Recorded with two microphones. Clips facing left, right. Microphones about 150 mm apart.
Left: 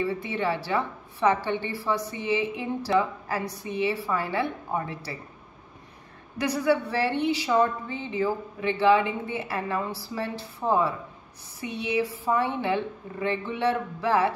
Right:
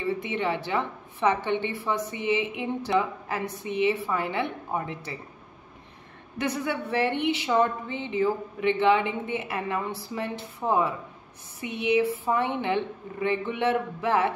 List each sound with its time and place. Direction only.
0.0 s a woman's voice: 20° right (ahead or behind)
6.3 s a woman's voice: 25° right (ahead or behind)